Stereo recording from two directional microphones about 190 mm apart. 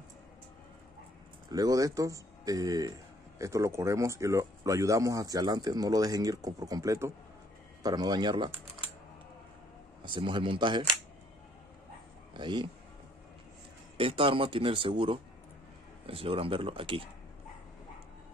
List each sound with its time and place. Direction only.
1.5 s speech: 20° right (ahead or behind)
10.0 s speech: 25° right (ahead or behind)
12.4 s speech: 25° right (ahead or behind)
13.9 s speech: 30° right (ahead or behind)